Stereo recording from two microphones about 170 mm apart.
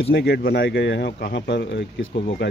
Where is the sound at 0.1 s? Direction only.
65° left (ahead or behind).